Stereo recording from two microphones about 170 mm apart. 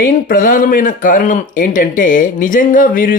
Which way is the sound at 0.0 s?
55° left (ahead or behind).